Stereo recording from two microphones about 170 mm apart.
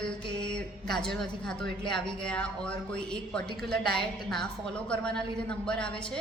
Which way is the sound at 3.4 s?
70° right (ahead or behind).